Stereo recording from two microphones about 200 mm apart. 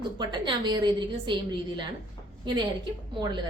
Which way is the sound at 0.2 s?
20° right (ahead or behind).